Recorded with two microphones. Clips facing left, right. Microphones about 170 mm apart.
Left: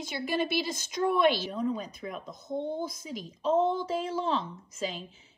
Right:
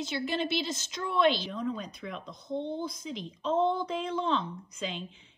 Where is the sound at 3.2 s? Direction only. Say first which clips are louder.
Left 3 dB; 5° left (ahead or behind).